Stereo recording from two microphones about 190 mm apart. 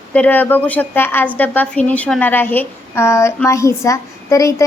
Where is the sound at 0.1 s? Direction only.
10° left (ahead or behind).